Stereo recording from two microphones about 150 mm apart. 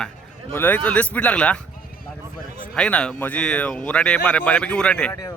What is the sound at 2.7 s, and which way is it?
Speech, 5° left (ahead or behind).